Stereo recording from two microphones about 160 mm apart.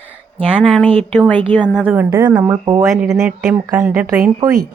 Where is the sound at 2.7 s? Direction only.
20° right (ahead or behind).